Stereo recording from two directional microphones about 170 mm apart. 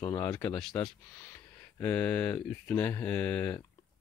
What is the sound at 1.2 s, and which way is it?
Speech, 15° left (ahead or behind).